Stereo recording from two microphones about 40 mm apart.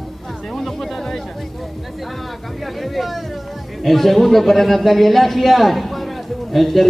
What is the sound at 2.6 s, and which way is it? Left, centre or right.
Speech, centre.